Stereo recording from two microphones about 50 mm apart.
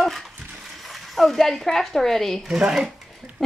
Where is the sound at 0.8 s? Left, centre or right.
Centre.